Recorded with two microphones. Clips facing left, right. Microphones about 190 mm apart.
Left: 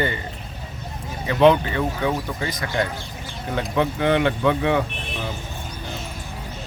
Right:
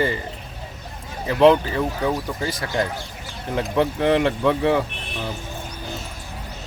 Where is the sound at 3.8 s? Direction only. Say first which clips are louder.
Right 1 dB; 35° right (ahead or behind).